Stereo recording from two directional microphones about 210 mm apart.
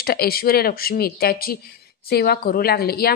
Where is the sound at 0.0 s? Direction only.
45° left (ahead or behind).